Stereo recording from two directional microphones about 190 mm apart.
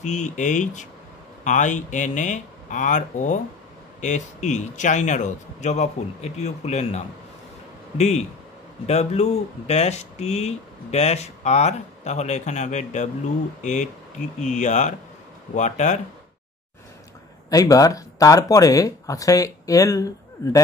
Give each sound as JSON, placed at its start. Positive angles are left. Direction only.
{"t": 0.0, "sound": "speech", "side_deg": 40}
{"t": 8.8, "sound": "speech", "side_deg": 35}
{"t": 17.5, "sound": "speech", "side_deg": 20}